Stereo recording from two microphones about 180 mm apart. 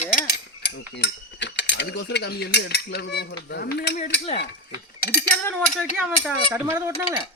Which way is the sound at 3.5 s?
65° left (ahead or behind).